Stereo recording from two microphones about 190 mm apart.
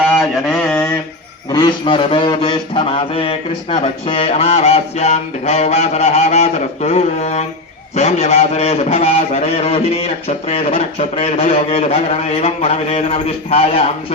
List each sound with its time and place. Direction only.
0.4 s mantra: 5° left (ahead or behind)
1.5 s a man's voice: 25° left (ahead or behind)